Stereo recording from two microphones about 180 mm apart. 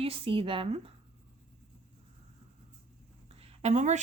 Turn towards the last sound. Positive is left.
turn(degrees=-40)  # may be behind; listen again after turning